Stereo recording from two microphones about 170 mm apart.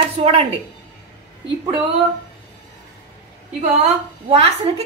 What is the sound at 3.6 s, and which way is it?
A woman's voice, 40° right (ahead or behind).